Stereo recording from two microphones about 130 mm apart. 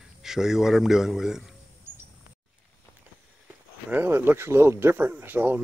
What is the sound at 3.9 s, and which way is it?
Speech, 15° right (ahead or behind).